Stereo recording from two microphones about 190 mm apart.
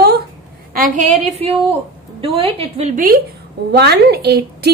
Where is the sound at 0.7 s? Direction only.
40° right (ahead or behind).